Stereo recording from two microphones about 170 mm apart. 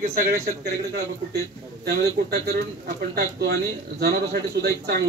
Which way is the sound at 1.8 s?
65° right (ahead or behind).